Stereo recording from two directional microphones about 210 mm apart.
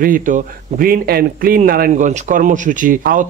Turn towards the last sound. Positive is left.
turn(degrees=-40)  # may be behind; listen again after turning